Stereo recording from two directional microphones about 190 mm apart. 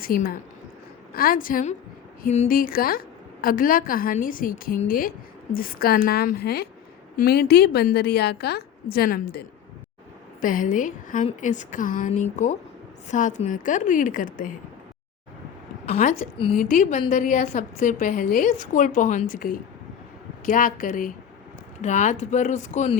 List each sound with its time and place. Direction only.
0.0 s a woman's voice: 50° left (ahead or behind)
10.4 s a woman's voice: 45° left (ahead or behind)
15.9 s speech: 35° left (ahead or behind)
16.6 s a woman's voice: 45° left (ahead or behind)